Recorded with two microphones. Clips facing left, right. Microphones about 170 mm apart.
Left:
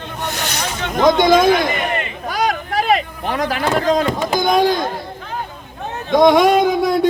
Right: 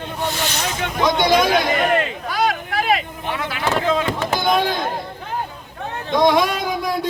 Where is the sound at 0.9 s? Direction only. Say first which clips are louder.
Left 5 dB; 50° left (ahead or behind).